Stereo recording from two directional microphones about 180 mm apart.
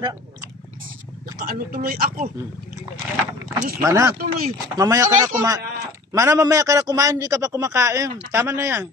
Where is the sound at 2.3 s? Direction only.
15° right (ahead or behind).